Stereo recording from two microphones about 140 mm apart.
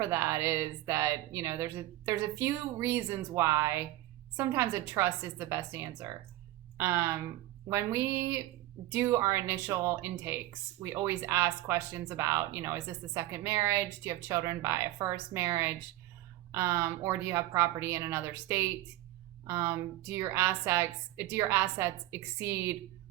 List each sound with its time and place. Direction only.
0.0 s a woman's voice: 20° right (ahead or behind)